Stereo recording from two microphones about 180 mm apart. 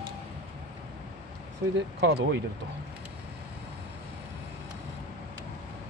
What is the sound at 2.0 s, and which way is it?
Speech, 70° right (ahead or behind).